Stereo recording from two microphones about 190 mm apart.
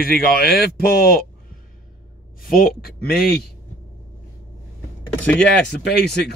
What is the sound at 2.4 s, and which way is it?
Speech, 55° left (ahead or behind).